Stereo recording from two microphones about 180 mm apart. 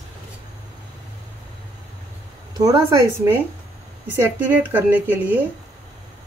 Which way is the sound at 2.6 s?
20° right (ahead or behind).